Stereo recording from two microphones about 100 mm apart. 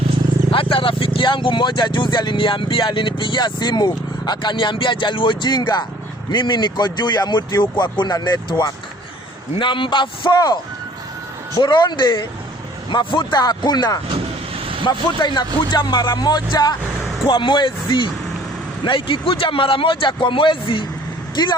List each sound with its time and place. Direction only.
0.5 s speech: 60° left (ahead or behind); by 10.6 s 45° left (ahead or behind)
11.6 s speech: 50° left (ahead or behind)
14.6 s vehicle: 65° right (ahead or behind)
14.8 s speech: 50° left (ahead or behind)
17.2 s speech: 55° left (ahead or behind)